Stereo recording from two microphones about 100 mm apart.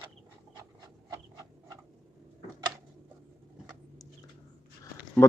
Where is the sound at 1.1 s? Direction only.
40° right (ahead or behind).